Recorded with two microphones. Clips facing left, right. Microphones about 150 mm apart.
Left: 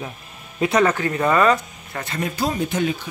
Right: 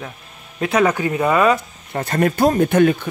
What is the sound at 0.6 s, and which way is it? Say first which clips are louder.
Speech: right 1 dB; 5° right (ahead or behind).